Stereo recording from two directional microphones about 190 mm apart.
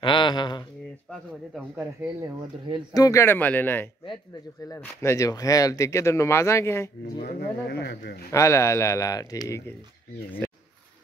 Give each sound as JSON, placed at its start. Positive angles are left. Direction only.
{"t": 0.0, "sound": "a sound", "side_deg": 25}
{"t": 1.5, "sound": "speech", "side_deg": -10}
{"t": 2.9, "sound": "speech", "side_deg": 15}
{"t": 7.2, "sound": "a man's voice", "side_deg": 55}
{"t": 8.3, "sound": "speech", "side_deg": 15}